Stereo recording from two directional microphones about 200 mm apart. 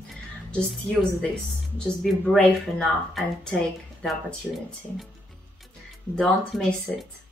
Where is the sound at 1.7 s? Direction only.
5° left (ahead or behind).